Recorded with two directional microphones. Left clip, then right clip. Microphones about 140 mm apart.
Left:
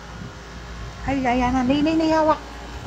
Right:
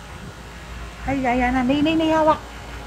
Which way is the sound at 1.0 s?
20° right (ahead or behind).